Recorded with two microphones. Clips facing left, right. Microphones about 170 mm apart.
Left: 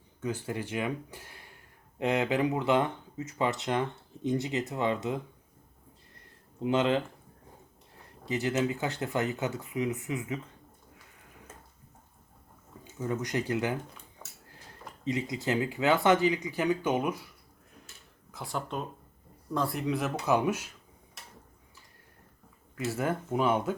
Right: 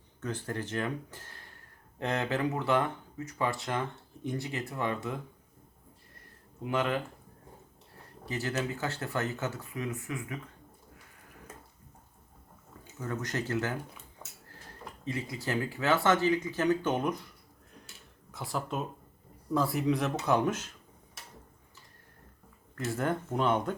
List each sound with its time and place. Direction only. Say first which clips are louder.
0.2 s speech: left 2 dB; 10° left (ahead or behind)
6.6 s speech: left 4 dB; 25° left (ahead or behind)
8.2 s speech: left 5 dB; 20° left (ahead or behind)
13.0 s speech: left 3 dB; 15° left (ahead or behind)
14.2 s a sound: right 1 dB; 5° left (ahead or behind)
15.0 s speech: left 4 dB; 20° left (ahead or behind)
18.3 s speech: right 1 dB; centre (ahead or behind)
22.8 s speech: left 1 dB; 5° left (ahead or behind)